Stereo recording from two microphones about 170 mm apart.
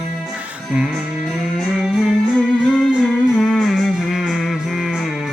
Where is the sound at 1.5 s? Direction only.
5° right (ahead or behind).